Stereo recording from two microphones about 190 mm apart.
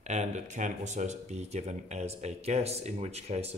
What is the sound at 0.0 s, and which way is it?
Speech, 35° right (ahead or behind).